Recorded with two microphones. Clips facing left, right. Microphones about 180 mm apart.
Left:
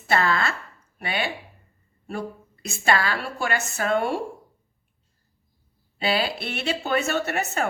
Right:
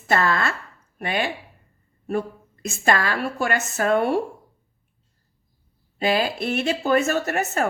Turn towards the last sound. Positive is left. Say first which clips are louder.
# right 2 dB
turn(degrees=-40)  # may be behind; listen again after turning